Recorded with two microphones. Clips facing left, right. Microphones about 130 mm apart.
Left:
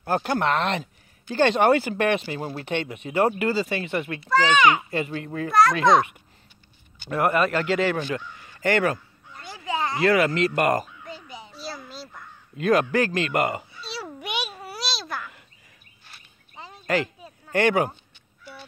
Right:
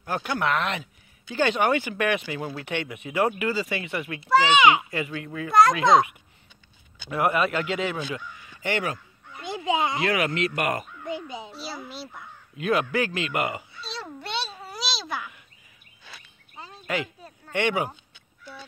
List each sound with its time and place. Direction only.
0.0 s speech: 40° left (ahead or behind)
4.3 s a child's voice: 10° right (ahead or behind)
4.9 s speech: 35° left (ahead or behind)
5.5 s a child's voice: 25° right (ahead or behind)
7.3 s a man's voice: 45° left (ahead or behind)
9.4 s a sound: 20° right (ahead or behind)
10.0 s speech: 35° left (ahead or behind)
11.1 s a sound: 20° right (ahead or behind)
11.6 s a sound: 5° right (ahead or behind)
12.5 s speech: 40° left (ahead or behind)
13.7 s a sound: 5° left (ahead or behind)
14.8 s babbling: centre (ahead or behind)
17.5 s speech: 40° left (ahead or behind)